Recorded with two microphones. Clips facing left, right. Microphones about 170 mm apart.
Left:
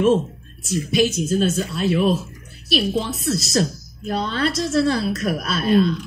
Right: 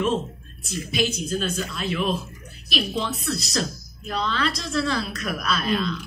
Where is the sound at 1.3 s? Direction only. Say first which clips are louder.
Left 7 dB; 40° left (ahead or behind).